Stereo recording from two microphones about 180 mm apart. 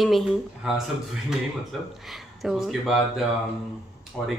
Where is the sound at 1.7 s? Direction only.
Centre (ahead or behind).